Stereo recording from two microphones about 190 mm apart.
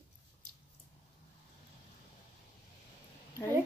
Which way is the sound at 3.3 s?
10° left (ahead or behind).